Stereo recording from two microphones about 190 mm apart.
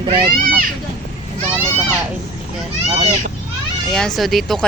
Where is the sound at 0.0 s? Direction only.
25° right (ahead or behind).